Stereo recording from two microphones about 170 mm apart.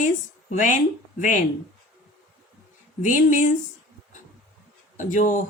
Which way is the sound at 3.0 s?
50° left (ahead or behind).